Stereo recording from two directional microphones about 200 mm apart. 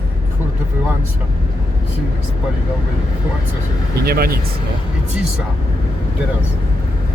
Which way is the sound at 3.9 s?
50° right (ahead or behind).